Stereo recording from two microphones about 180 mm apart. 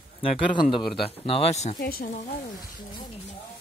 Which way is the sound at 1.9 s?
55° left (ahead or behind).